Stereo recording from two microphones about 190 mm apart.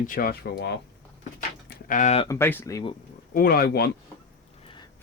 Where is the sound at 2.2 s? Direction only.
15° left (ahead or behind).